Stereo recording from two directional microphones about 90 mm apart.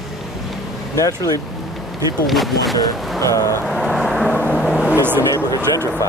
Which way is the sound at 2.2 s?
Centre (ahead or behind).